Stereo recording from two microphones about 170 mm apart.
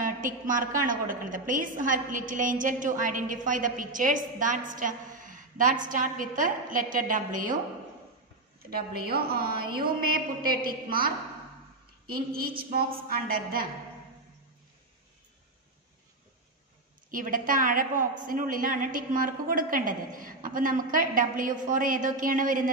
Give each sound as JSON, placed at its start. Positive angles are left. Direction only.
{"t": 0.0, "sound": "a woman's voice", "side_deg": -50}
{"t": 8.5, "sound": "a woman's voice", "side_deg": -65}
{"t": 12.1, "sound": "a woman's voice", "side_deg": -60}
{"t": 17.1, "sound": "a woman's voice", "side_deg": -55}